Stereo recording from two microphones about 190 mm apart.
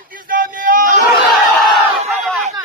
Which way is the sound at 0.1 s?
45° right (ahead or behind).